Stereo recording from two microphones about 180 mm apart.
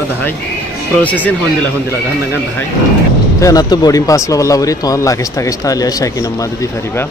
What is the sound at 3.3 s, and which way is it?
Speech, 20° left (ahead or behind).